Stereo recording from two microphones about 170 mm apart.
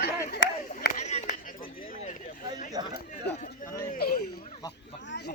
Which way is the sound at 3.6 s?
20° left (ahead or behind).